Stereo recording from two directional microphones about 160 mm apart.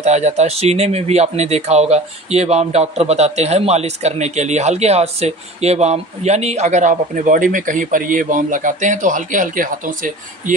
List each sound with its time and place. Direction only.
0.0 s speech: 45° right (ahead or behind)